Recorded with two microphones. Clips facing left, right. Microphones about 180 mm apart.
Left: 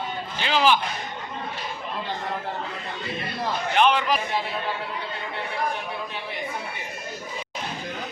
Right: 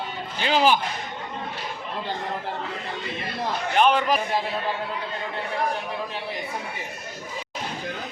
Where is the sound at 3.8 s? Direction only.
45° right (ahead or behind).